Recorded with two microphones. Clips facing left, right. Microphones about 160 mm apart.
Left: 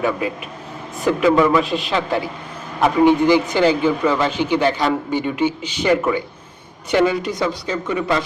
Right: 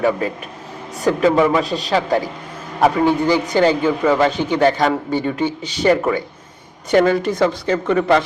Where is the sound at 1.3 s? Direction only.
25° right (ahead or behind).